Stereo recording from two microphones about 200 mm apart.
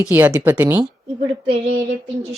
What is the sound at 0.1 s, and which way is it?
Speech, 10° right (ahead or behind).